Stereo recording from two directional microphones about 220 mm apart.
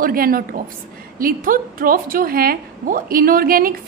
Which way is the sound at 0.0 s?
40° right (ahead or behind).